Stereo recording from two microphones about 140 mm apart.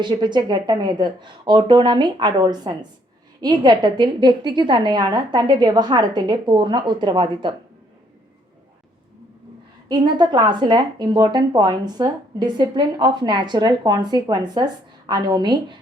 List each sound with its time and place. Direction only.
0.0 s a woman's voice: 30° right (ahead or behind)
9.9 s a woman's voice: 30° right (ahead or behind)